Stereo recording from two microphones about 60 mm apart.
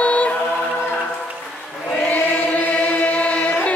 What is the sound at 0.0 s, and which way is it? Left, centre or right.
Music, left.